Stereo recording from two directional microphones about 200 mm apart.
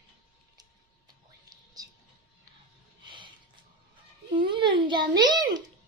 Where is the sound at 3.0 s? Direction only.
25° right (ahead or behind).